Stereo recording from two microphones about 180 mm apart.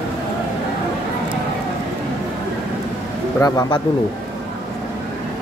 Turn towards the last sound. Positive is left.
turn(degrees=20)  # may be behind; listen again after turning